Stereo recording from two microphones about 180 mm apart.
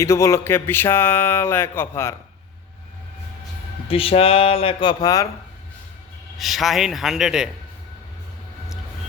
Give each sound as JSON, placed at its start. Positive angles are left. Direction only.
{"t": 0.0, "sound": "speech", "side_deg": 15}
{"t": 3.8, "sound": "speech", "side_deg": 30}
{"t": 6.3, "sound": "a man's voice", "side_deg": 0}